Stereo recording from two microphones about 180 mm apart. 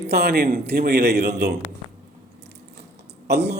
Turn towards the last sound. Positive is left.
turn(degrees=-65)  # may be behind; listen again after turning